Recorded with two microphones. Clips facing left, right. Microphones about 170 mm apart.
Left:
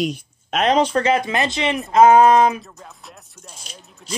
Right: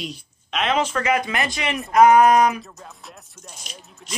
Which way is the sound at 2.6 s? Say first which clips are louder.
Even; centre (ahead or behind).